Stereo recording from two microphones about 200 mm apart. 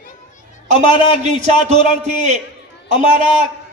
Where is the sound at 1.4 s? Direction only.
35° right (ahead or behind).